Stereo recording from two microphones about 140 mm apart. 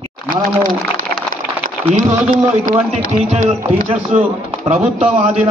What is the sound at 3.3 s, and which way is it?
A man's voice, 55° right (ahead or behind).